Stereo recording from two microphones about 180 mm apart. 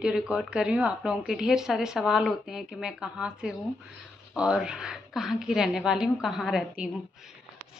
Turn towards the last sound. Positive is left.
turn(degrees=0)  # may be behind; listen again after turning